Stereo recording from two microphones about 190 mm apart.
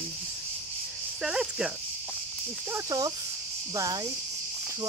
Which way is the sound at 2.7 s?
20° right (ahead or behind).